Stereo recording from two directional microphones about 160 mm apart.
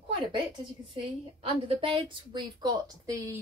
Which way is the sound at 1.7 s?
35° right (ahead or behind).